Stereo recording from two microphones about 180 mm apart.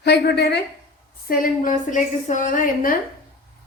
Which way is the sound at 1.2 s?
50° left (ahead or behind).